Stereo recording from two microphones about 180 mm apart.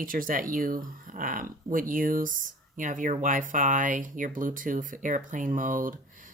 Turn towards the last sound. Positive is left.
turn(degrees=-50)  # may be behind; listen again after turning